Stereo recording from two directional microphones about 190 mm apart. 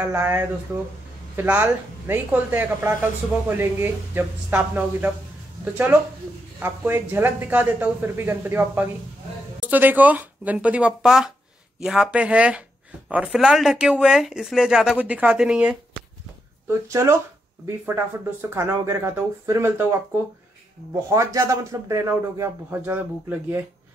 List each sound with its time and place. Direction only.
0.0 s speech: 10° right (ahead or behind)
6.6 s speech: 10° right (ahead or behind)
16.6 s speech: 15° right (ahead or behind)
20.9 s speech: 15° right (ahead or behind)